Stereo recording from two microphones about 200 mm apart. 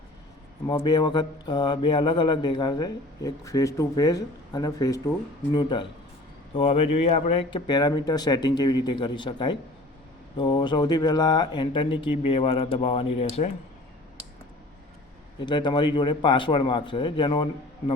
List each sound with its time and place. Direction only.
0.7 s speech: 20° left (ahead or behind)
15.4 s speech: 25° left (ahead or behind)